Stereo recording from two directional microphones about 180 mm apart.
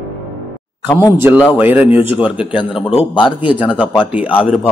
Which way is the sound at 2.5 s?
30° left (ahead or behind).